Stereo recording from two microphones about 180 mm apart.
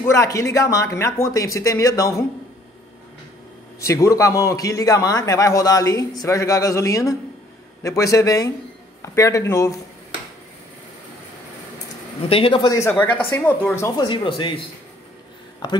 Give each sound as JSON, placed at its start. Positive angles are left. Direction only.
{"t": 0.0, "sound": "speech", "side_deg": 15}
{"t": 3.8, "sound": "a man's voice", "side_deg": 15}
{"t": 12.3, "sound": "a man's voice", "side_deg": 30}
{"t": 14.0, "sound": "a man's voice", "side_deg": 30}